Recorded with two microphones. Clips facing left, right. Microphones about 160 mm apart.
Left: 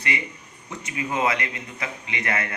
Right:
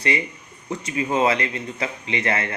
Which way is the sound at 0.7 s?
30° right (ahead or behind).